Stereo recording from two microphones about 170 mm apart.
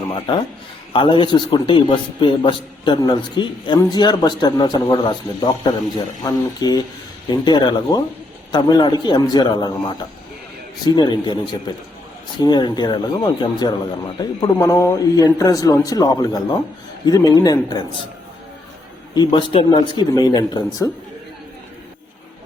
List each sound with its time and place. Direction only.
0.9 s a man's voice: 30° left (ahead or behind)
10.8 s a man's voice: 25° left (ahead or behind)
12.4 s a man's voice: 25° left (ahead or behind)
19.1 s a man's voice: 25° left (ahead or behind)